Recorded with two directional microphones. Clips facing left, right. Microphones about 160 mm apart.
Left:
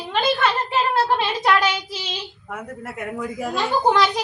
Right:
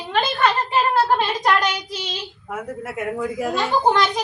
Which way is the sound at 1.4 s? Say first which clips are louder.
Left 1 dB; 5° left (ahead or behind).